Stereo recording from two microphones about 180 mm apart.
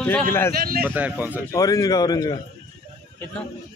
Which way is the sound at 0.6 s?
55° right (ahead or behind).